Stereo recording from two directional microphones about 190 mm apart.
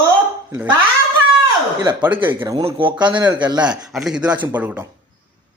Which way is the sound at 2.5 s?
25° right (ahead or behind).